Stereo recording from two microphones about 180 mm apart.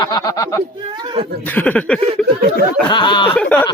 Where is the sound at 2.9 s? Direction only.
25° left (ahead or behind).